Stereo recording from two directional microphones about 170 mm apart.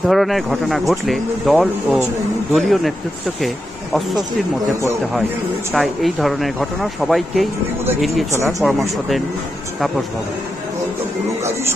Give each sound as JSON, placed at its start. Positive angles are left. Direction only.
{"t": 0.0, "sound": "speech", "side_deg": 0}
{"t": 5.8, "sound": "speech", "side_deg": 0}